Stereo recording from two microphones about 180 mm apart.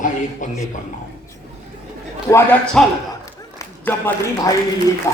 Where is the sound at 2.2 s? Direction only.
10° left (ahead or behind).